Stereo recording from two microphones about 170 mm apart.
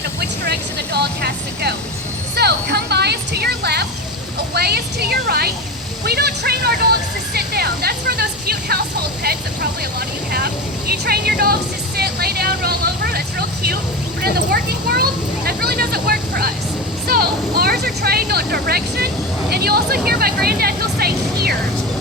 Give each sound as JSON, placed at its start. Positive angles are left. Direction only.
{"t": 0.9, "sound": "speech", "side_deg": -70}
{"t": 2.3, "sound": "vehicle", "side_deg": -75}
{"t": 4.5, "sound": "speech", "side_deg": -70}
{"t": 6.1, "sound": "a sound", "side_deg": -70}
{"t": 7.3, "sound": "music", "side_deg": -65}
{"t": 9.2, "sound": "speech", "side_deg": -65}